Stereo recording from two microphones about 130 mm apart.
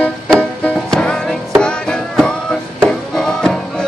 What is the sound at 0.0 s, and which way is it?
Music, 10° left (ahead or behind).